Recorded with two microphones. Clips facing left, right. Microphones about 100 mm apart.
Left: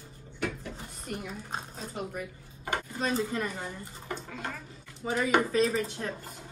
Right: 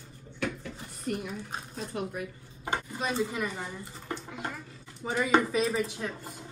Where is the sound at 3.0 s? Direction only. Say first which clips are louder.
Left 2 dB; 15° right (ahead or behind).